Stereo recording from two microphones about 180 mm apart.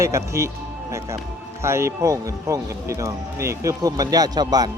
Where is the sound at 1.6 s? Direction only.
15° right (ahead or behind).